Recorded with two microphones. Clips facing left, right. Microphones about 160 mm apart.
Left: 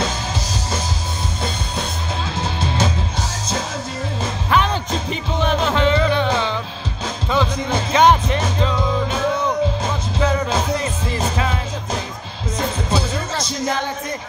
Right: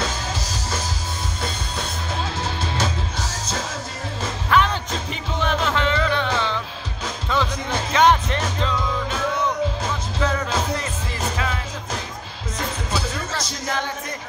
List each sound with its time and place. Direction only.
2.3 s music: 20° left (ahead or behind)
4.2 s music: 20° left (ahead or behind)